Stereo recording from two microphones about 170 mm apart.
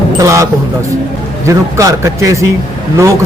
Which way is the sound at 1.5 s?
20° right (ahead or behind).